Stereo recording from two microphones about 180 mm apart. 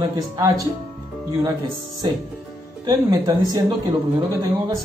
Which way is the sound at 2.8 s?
20° right (ahead or behind).